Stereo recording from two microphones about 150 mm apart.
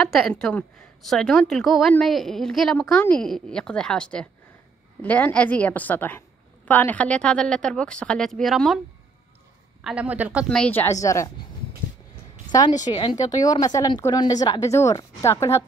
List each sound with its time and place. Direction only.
0.0 s a woman's voice: 5° left (ahead or behind)
9.8 s a woman's voice: 10° right (ahead or behind)
10.5 s a woman's voice: 10° left (ahead or behind)
12.4 s a sound: 30° left (ahead or behind)
12.8 s a woman's voice: 25° left (ahead or behind)